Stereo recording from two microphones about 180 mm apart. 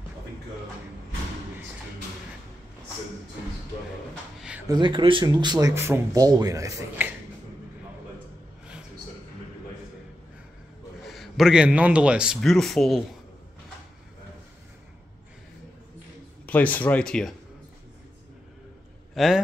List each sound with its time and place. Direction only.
4.4 s a sound: 5° right (ahead or behind)
4.6 s speech: 25° right (ahead or behind)
11.1 s a man's voice: centre (ahead or behind)
16.4 s speech: 10° left (ahead or behind)
19.1 s a man's voice: centre (ahead or behind)